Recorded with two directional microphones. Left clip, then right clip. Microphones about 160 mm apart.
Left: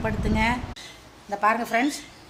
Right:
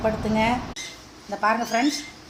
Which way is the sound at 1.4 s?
10° left (ahead or behind).